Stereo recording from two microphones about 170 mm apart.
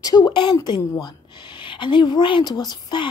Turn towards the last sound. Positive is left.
turn(degrees=25)  # may be behind; listen again after turning